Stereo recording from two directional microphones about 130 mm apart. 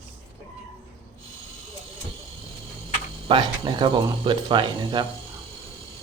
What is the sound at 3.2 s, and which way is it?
Speech, 35° right (ahead or behind).